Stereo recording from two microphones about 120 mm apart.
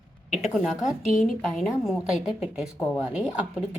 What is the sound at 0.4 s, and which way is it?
A woman's voice, 5° right (ahead or behind).